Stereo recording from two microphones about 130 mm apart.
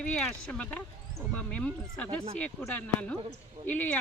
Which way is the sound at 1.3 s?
10° left (ahead or behind).